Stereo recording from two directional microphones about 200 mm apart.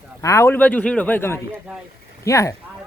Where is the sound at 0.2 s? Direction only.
15° left (ahead or behind).